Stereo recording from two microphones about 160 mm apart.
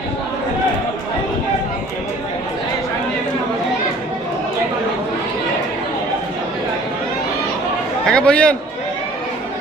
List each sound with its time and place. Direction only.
8.0 s a man's voice: 5° left (ahead or behind)